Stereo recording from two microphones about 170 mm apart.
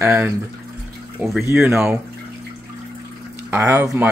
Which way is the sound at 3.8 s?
20° right (ahead or behind).